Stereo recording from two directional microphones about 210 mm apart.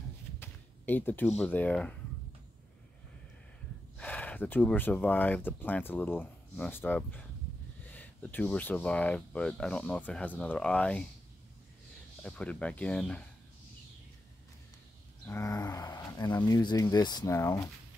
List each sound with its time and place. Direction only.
0.4 s speech: 10° left (ahead or behind)
4.0 s speech: 5° left (ahead or behind)
12.2 s speech: 5° left (ahead or behind)
15.2 s speech: 15° left (ahead or behind)